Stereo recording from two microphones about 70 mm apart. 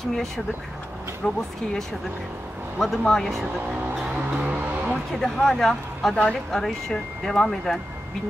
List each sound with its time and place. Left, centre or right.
0.0 s speech: centre
4.1 s vehicle: centre
5.1 s speech: centre